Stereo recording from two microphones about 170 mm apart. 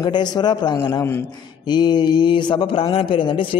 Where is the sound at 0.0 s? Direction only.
25° left (ahead or behind).